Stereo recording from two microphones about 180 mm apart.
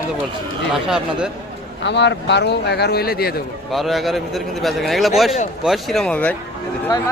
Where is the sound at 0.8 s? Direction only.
5° right (ahead or behind).